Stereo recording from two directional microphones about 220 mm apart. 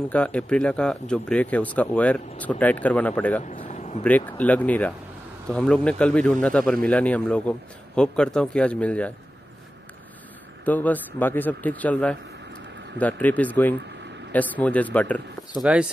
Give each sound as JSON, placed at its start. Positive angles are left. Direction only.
{"t": 0.1, "sound": "speech", "side_deg": 5}
{"t": 3.4, "sound": "speech", "side_deg": 30}
{"t": 4.0, "sound": "a man's voice", "side_deg": 5}
{"t": 10.6, "sound": "speech", "side_deg": 5}
{"t": 15.6, "sound": "a man's voice", "side_deg": -5}